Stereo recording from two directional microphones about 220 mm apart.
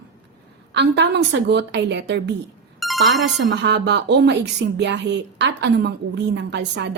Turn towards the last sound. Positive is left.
turn(degrees=-50)  # may be behind; listen again after turning